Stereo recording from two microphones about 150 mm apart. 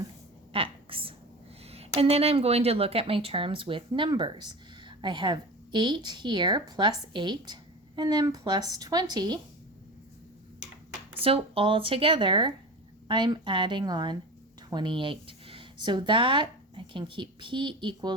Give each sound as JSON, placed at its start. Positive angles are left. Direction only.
{"t": 0.5, "sound": "a sound", "side_deg": -35}
{"t": 1.6, "sound": "a woman's voice", "side_deg": -40}
{"t": 11.2, "sound": "a woman's voice", "side_deg": -40}